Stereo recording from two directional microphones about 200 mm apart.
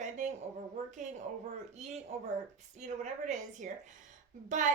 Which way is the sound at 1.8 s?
35° right (ahead or behind).